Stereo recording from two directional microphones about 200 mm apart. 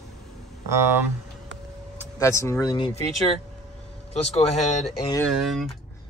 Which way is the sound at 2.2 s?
15° left (ahead or behind).